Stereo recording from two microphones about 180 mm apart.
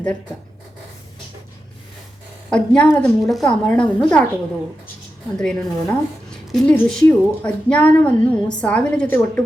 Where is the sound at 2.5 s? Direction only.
5° left (ahead or behind).